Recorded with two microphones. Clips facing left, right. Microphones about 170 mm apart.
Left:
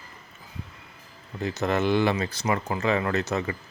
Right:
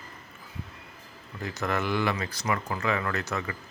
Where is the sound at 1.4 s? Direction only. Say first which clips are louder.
Left 5 dB; 25° left (ahead or behind).